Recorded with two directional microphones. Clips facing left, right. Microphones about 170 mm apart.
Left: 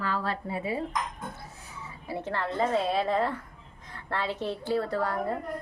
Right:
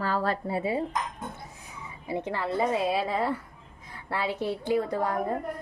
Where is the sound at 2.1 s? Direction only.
15° right (ahead or behind).